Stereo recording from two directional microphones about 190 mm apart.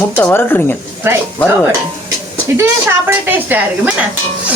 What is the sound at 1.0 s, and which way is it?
Speech, 10° right (ahead or behind).